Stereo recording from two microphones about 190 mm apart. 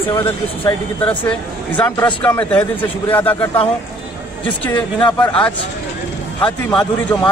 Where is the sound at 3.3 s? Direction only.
25° left (ahead or behind).